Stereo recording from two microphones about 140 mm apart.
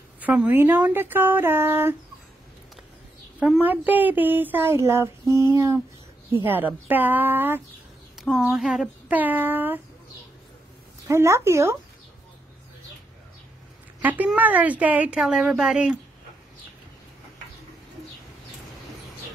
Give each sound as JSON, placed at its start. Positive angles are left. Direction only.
{"t": 0.2, "sound": "speech", "side_deg": -10}
{"t": 3.3, "sound": "speech", "side_deg": -5}
{"t": 8.2, "sound": "speech", "side_deg": 0}
{"t": 11.1, "sound": "speech", "side_deg": -20}
{"t": 14.0, "sound": "speech", "side_deg": -10}